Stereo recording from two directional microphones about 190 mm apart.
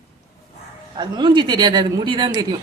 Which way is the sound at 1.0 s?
25° right (ahead or behind).